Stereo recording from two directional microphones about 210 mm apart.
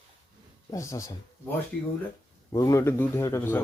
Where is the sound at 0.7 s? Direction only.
15° left (ahead or behind).